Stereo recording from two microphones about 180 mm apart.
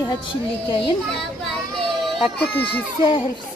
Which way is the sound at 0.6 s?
25° left (ahead or behind).